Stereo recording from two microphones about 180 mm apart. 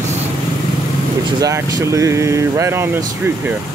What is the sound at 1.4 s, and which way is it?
Speech, 20° right (ahead or behind).